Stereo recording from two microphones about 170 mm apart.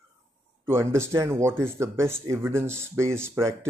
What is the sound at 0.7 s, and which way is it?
Speech, 15° right (ahead or behind).